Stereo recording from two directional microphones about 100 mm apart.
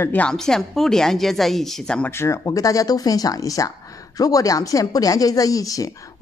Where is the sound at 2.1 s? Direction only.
25° left (ahead or behind).